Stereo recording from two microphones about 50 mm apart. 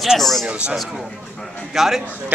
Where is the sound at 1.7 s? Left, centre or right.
Centre.